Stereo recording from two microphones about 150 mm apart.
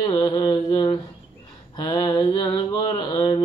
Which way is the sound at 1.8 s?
25° left (ahead or behind).